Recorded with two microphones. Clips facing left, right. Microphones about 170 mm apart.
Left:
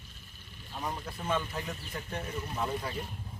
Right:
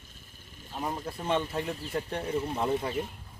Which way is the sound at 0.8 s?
20° right (ahead or behind).